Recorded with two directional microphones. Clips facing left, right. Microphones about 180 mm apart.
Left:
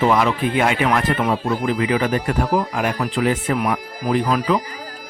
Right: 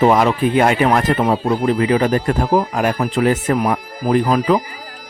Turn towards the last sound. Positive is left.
turn(degrees=-45)  # may be behind; listen again after turning